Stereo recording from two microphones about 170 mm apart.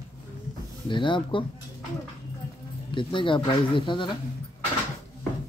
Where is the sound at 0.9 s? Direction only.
30° left (ahead or behind).